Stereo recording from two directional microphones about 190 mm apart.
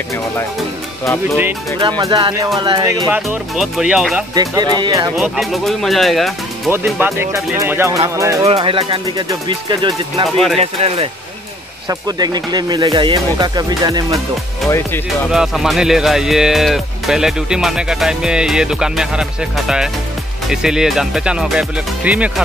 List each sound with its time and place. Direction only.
1.8 s speech: 20° right (ahead or behind)
3.2 s speech: centre (ahead or behind)
4.4 s speech: 20° right (ahead or behind)
5.1 s speech: centre (ahead or behind)
6.7 s speech: 10° right (ahead or behind)
8.5 s speech: 30° right (ahead or behind)
11.9 s speech: 20° right (ahead or behind)
15.3 s speech: centre (ahead or behind)